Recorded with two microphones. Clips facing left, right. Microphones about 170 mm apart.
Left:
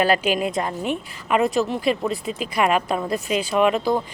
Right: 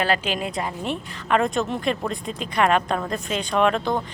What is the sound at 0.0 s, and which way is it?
Speech, 10° left (ahead or behind).